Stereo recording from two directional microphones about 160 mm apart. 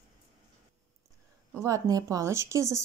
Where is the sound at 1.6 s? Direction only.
20° right (ahead or behind).